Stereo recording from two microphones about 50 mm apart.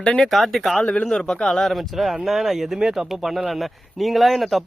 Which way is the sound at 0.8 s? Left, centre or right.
Left.